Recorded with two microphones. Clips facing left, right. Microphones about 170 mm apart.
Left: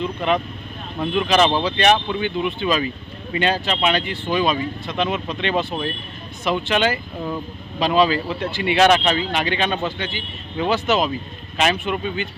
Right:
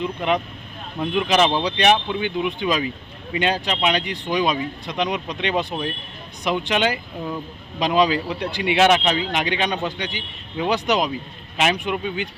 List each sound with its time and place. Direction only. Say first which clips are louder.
0.0 s speech: left 1 dB; 15° right (ahead or behind)